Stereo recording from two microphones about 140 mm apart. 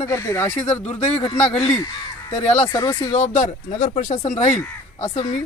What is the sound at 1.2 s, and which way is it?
Speech, 45° left (ahead or behind).